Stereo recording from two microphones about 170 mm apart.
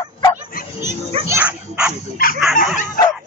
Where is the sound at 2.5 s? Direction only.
50° left (ahead or behind).